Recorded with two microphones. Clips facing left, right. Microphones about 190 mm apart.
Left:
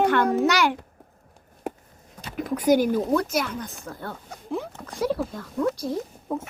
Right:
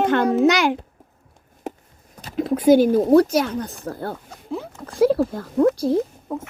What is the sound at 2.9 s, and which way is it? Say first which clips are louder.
A woman's voice: right 8 dB; 35° right (ahead or behind).